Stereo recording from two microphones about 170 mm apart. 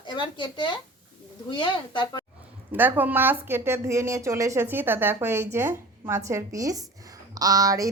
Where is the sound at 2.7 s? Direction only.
10° right (ahead or behind).